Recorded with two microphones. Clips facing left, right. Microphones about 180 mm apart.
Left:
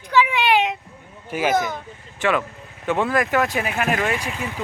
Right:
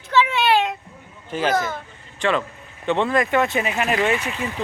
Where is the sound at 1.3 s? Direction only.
15° left (ahead or behind).